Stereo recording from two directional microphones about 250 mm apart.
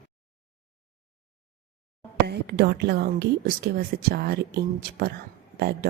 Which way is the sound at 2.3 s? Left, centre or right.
Right.